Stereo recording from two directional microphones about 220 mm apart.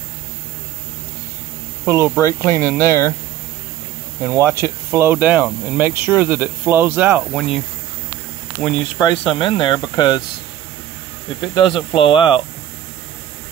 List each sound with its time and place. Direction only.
1.9 s speech: 10° right (ahead or behind)
4.2 s speech: 5° right (ahead or behind)
8.9 s speech: 20° left (ahead or behind)
11.5 s speech: 20° left (ahead or behind)